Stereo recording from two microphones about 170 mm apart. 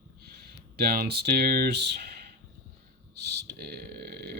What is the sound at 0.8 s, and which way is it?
Speech, 65° right (ahead or behind).